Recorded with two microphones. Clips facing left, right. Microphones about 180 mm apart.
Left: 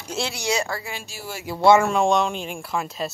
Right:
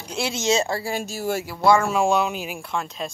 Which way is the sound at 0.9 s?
45° right (ahead or behind).